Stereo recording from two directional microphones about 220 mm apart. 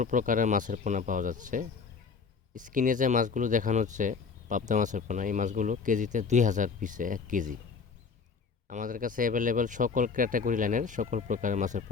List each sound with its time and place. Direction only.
0.0 s speech: 35° right (ahead or behind)
8.7 s speech: 35° right (ahead or behind)